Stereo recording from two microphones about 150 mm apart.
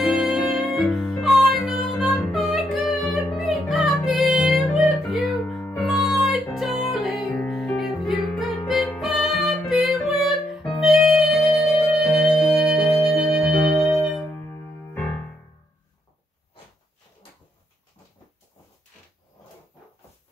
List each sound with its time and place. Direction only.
0.0 s music: centre (ahead or behind)
14.2 s music: 15° left (ahead or behind)